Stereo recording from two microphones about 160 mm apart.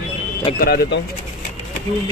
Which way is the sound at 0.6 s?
75° left (ahead or behind).